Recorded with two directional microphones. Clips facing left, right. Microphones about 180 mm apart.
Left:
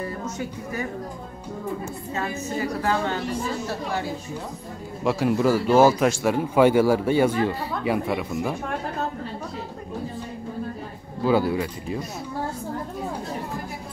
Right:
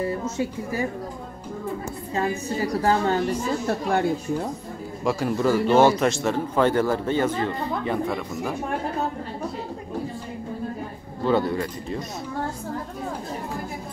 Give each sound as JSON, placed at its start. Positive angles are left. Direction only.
{"t": 0.0, "sound": "speech", "side_deg": -30}
{"t": 2.1, "sound": "a woman's voice", "side_deg": -35}
{"t": 3.6, "sound": "a woman's voice", "side_deg": -55}
{"t": 5.0, "sound": "a man's voice", "side_deg": 5}
{"t": 11.2, "sound": "a man's voice", "side_deg": 5}